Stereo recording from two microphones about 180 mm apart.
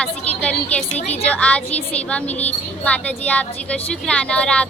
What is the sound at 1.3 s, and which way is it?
A woman's voice, 5° left (ahead or behind).